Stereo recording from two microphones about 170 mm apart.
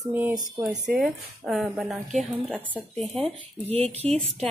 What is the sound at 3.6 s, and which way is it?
Speech, 35° right (ahead or behind).